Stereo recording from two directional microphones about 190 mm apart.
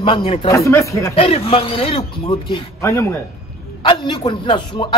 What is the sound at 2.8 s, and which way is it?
Speech, 15° left (ahead or behind).